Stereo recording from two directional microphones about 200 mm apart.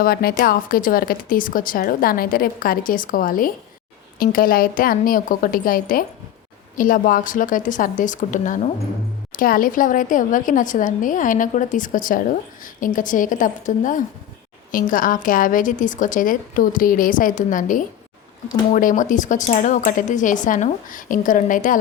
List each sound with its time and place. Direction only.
0.0 s speech: 50° left (ahead or behind)